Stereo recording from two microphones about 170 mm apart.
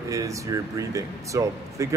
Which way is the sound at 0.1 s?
20° right (ahead or behind).